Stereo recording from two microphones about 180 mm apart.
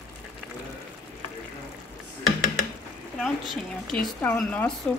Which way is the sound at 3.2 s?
Centre (ahead or behind).